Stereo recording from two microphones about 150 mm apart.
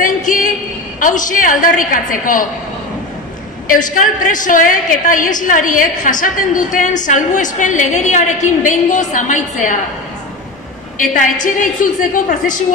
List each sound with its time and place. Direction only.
0.0 s a sound: 60° left (ahead or behind)
0.9 s a woman's voice: 60° left (ahead or behind)
3.6 s a woman's voice: 60° left (ahead or behind)
11.0 s a woman's voice: 60° left (ahead or behind)